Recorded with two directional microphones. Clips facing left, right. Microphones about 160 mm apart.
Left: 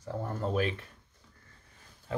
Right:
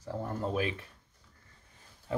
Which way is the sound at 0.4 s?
10° right (ahead or behind).